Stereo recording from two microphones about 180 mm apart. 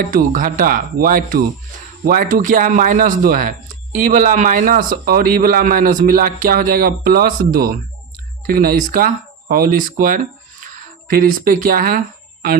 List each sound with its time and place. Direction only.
0.1 s speech: 50° right (ahead or behind)